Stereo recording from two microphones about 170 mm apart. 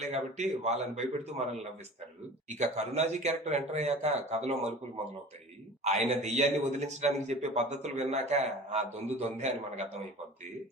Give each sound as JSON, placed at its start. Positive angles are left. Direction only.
{"t": 0.0, "sound": "a man's voice", "side_deg": -40}
{"t": 2.6, "sound": "a man's voice", "side_deg": -40}
{"t": 5.8, "sound": "a man's voice", "side_deg": -40}